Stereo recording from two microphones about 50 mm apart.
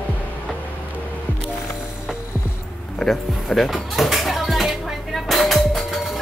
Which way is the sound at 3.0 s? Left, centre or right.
Centre.